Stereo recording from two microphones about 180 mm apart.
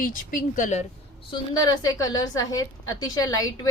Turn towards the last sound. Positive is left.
turn(degrees=20)  # may be behind; listen again after turning